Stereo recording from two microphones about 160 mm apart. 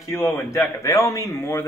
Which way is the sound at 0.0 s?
15° left (ahead or behind).